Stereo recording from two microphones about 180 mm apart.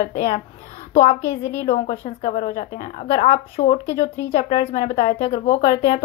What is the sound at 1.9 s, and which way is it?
A woman's voice, 40° left (ahead or behind).